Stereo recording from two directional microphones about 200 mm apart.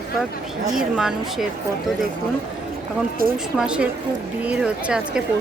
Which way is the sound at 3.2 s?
45° right (ahead or behind).